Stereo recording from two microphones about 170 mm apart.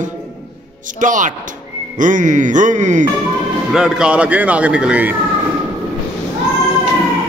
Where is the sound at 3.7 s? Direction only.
5° right (ahead or behind).